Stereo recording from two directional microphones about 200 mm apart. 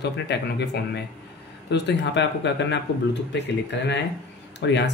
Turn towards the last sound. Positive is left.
turn(degrees=60)  # may be behind; listen again after turning